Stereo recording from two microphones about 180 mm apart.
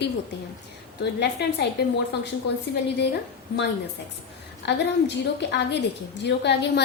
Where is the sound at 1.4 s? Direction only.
70° left (ahead or behind).